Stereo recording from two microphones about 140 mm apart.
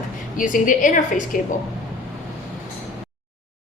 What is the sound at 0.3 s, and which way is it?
A woman's voice, 70° left (ahead or behind).